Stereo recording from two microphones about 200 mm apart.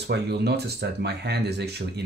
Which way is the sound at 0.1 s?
55° right (ahead or behind).